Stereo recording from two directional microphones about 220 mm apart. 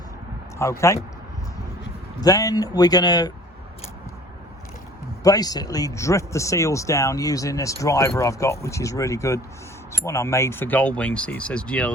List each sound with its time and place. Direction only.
0.6 s speech: 15° left (ahead or behind)
2.2 s speech: 15° left (ahead or behind)
5.2 s speech: 15° left (ahead or behind)